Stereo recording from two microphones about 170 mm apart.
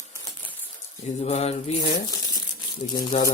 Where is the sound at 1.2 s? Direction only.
40° left (ahead or behind).